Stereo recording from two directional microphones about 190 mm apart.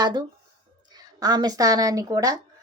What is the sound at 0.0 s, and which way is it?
Speech, 20° right (ahead or behind).